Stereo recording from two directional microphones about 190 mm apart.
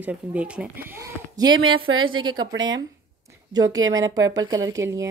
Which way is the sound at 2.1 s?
25° right (ahead or behind).